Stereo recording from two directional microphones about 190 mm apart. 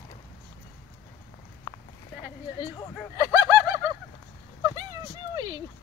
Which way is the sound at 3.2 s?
20° right (ahead or behind).